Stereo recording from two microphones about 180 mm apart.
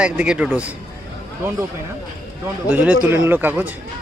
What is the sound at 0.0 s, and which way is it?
Speech, 5° right (ahead or behind).